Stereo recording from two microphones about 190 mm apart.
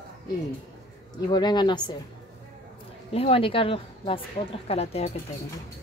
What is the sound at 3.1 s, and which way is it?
A woman's voice, 30° left (ahead or behind).